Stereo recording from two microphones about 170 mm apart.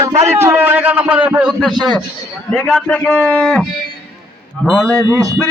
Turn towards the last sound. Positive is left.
turn(degrees=-20)  # may be behind; listen again after turning